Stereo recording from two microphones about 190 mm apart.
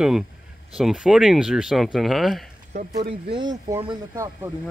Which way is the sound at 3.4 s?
20° right (ahead or behind).